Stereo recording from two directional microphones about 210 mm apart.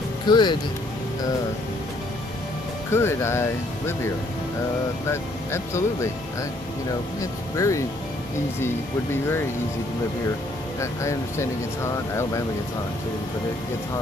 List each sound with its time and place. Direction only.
0.3 s speech: 20° left (ahead or behind)
2.9 s speech: 10° left (ahead or behind)
5.1 s speech: 15° left (ahead or behind)
7.5 s speech: 15° left (ahead or behind)
10.8 s speech: 15° left (ahead or behind)